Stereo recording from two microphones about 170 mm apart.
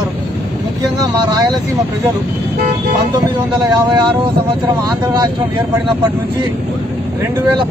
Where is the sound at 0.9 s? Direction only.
25° right (ahead or behind).